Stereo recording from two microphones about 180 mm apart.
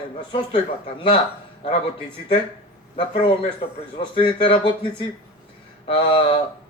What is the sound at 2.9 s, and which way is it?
A man's voice, 30° left (ahead or behind).